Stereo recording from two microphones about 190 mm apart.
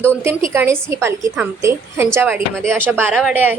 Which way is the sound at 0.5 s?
15° right (ahead or behind).